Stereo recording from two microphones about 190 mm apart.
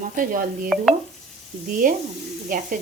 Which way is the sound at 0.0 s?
45° right (ahead or behind).